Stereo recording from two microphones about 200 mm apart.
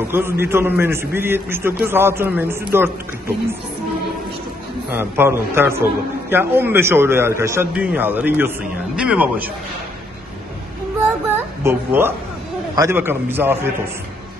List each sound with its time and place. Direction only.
0.1 s a man's voice: 10° right (ahead or behind)
4.9 s a man's voice: 10° right (ahead or behind)
11.3 s a sound: 10° right (ahead or behind)
12.7 s a man's voice: 10° right (ahead or behind)